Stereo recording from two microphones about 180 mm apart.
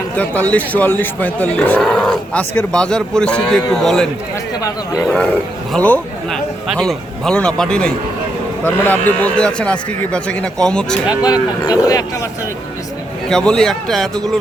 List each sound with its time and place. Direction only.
0.5 s a man's voice: 10° left (ahead or behind)
11.2 s speech: 20° left (ahead or behind)
13.2 s speech: 5° left (ahead or behind)